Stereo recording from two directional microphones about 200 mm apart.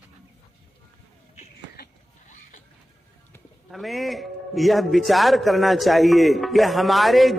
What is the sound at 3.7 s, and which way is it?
A man's voice, centre (ahead or behind).